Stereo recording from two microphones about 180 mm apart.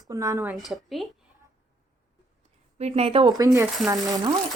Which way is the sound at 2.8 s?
35° right (ahead or behind).